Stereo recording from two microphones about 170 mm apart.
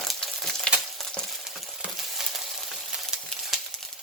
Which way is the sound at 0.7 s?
Centre (ahead or behind).